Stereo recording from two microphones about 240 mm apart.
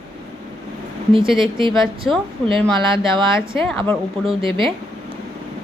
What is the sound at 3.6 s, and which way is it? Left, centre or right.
Speech, centre.